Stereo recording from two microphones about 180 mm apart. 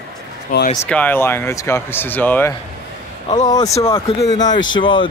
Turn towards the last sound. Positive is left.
turn(degrees=25)  # may be behind; listen again after turning